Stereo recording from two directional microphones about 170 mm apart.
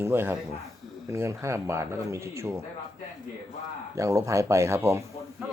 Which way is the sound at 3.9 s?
15° right (ahead or behind).